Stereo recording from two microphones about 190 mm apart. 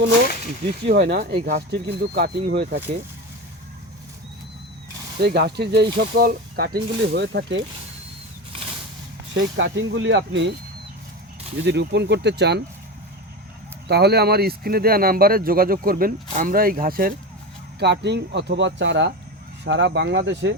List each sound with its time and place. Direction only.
0.9 s speech: 60° right (ahead or behind)
5.2 s speech: 60° right (ahead or behind)
9.3 s speech: 70° right (ahead or behind)
11.6 s speech: 65° right (ahead or behind)
13.8 s speech: 60° right (ahead or behind)
17.7 s speech: 60° right (ahead or behind)